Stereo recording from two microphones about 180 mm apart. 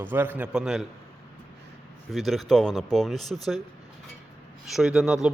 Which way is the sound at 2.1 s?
Centre (ahead or behind).